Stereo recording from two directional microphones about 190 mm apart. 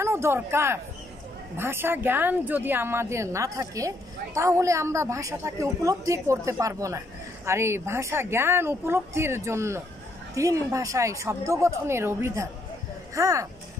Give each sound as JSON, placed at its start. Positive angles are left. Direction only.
{"t": 0.0, "sound": "a woman's voice", "side_deg": -15}